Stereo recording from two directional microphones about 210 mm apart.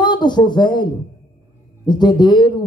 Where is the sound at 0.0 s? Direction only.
20° left (ahead or behind).